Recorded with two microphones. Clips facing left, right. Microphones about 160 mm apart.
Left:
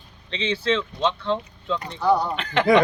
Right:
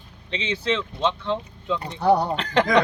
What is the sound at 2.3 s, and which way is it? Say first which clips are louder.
Speech: right 2 dB; 35° right (ahead or behind).